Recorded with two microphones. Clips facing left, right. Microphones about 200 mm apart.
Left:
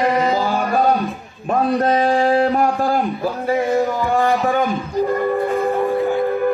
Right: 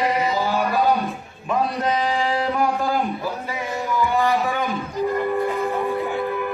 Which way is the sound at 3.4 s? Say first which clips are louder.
Left 10 dB; 50° left (ahead or behind).